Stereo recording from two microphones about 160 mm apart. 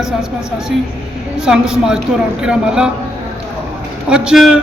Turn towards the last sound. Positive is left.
turn(degrees=-5)  # may be behind; listen again after turning